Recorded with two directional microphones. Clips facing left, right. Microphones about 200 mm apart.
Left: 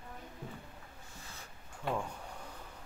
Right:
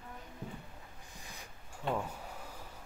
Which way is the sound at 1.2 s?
15° right (ahead or behind).